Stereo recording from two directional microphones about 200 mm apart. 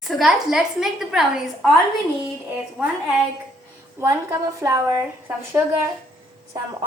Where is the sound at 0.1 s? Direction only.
Centre (ahead or behind).